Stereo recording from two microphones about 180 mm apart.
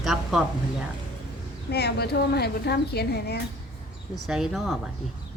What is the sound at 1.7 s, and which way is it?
A woman's voice, 65° left (ahead or behind).